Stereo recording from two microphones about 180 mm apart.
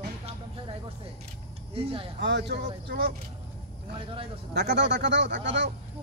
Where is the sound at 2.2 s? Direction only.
75° right (ahead or behind).